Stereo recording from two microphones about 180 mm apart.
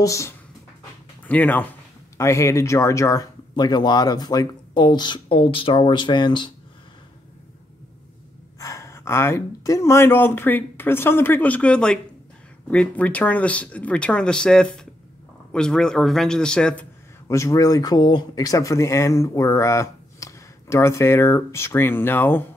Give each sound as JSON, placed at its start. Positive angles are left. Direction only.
{"t": 0.0, "sound": "speech", "side_deg": 15}
{"t": 8.5, "sound": "speech", "side_deg": 15}
{"t": 17.3, "sound": "speech", "side_deg": 15}